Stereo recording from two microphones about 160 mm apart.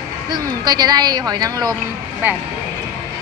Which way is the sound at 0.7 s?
25° right (ahead or behind).